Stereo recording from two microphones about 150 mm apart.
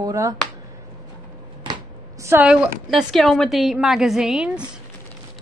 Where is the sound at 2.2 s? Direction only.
10° right (ahead or behind).